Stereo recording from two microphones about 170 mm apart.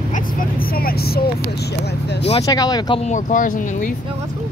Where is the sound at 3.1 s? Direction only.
50° left (ahead or behind).